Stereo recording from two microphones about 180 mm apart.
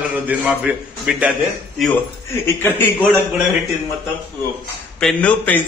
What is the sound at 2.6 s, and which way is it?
Speech, 10° left (ahead or behind).